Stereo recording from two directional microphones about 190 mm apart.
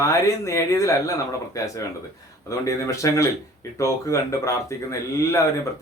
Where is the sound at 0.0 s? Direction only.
15° left (ahead or behind).